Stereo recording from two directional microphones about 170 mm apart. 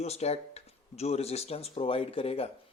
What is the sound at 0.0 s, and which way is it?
Speech, 40° left (ahead or behind).